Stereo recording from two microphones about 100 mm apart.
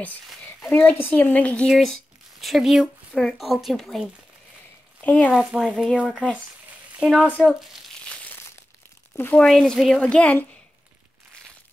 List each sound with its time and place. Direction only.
0.7 s a woman's voice: 15° left (ahead or behind)
1.7 s speech: centre (ahead or behind)
5.0 s a woman's voice: 15° left (ahead or behind)
5.3 s speech: 5° right (ahead or behind)
7.2 s a woman's voice: 10° left (ahead or behind)
9.1 s speech: 20° left (ahead or behind)
9.4 s a woman's voice: 5° left (ahead or behind)